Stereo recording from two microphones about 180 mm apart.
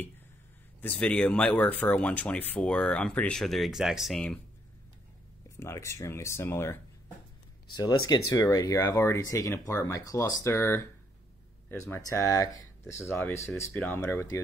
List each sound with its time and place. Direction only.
0.7 s speech: 10° left (ahead or behind)
5.6 s speech: 15° left (ahead or behind)